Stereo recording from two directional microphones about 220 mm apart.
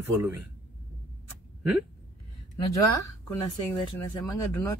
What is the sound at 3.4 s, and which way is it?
Speech, 20° left (ahead or behind).